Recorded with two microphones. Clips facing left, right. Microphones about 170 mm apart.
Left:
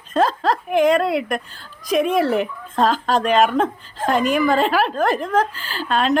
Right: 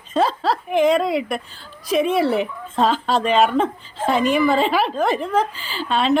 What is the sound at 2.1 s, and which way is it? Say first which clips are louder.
Speech: even; 40° left (ahead or behind).